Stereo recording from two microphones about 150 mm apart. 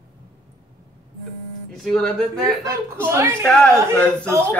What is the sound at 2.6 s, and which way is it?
Speech, 20° right (ahead or behind).